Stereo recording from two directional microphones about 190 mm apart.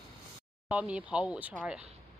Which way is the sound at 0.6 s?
5° right (ahead or behind).